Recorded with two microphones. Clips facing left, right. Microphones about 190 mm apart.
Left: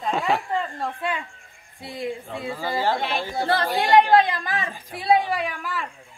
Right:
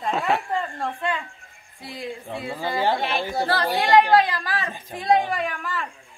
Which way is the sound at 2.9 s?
Centre (ahead or behind).